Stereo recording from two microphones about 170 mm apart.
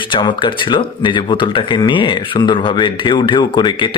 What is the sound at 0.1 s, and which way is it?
Speech, 30° left (ahead or behind).